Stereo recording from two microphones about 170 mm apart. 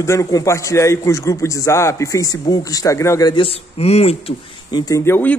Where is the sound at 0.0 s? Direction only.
15° left (ahead or behind); by 4.4 s 35° left (ahead or behind).